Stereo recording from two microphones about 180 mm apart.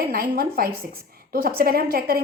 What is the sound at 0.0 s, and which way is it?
A woman's voice, 55° right (ahead or behind).